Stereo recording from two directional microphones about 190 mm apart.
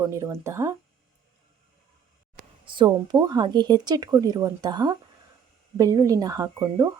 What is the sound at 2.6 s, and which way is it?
Speech, 25° right (ahead or behind).